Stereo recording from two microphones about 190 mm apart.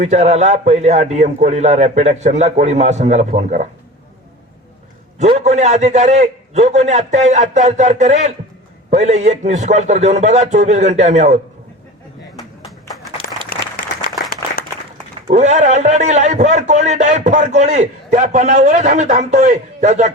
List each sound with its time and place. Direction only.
0.0 s a man's voice: 35° right (ahead or behind)
5.2 s a man's voice: 35° right (ahead or behind)
13.2 s applause: 50° left (ahead or behind)
15.3 s a man's voice: 40° right (ahead or behind)